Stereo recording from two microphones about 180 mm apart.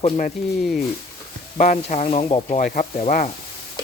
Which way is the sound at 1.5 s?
45° left (ahead or behind).